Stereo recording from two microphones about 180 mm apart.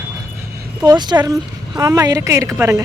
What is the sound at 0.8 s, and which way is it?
A woman's voice, 20° right (ahead or behind).